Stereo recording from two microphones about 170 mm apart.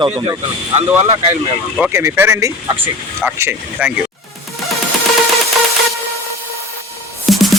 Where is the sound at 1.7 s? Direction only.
10° right (ahead or behind).